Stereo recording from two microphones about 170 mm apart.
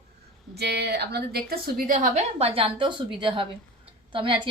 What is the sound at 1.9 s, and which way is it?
A woman's voice, 40° right (ahead or behind).